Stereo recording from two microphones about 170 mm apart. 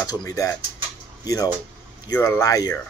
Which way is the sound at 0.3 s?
20° left (ahead or behind).